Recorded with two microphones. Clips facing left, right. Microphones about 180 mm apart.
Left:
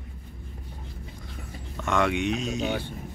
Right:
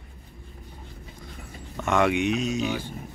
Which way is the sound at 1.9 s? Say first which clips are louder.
Right 2 dB; 5° right (ahead or behind).